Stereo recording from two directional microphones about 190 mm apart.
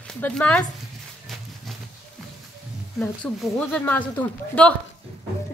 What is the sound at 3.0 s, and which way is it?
A woman's voice, 5° left (ahead or behind).